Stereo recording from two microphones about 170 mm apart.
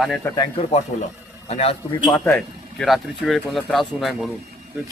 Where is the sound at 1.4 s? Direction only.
35° left (ahead or behind).